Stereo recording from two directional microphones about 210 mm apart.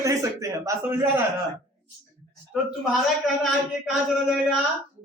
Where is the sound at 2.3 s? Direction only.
Centre (ahead or behind).